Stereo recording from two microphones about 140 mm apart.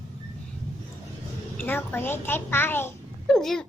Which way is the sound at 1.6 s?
15° left (ahead or behind).